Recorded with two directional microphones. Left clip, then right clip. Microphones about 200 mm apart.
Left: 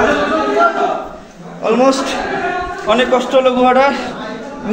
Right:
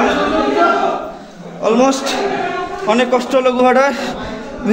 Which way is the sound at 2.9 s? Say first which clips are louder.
Left 1 dB; 35° right (ahead or behind).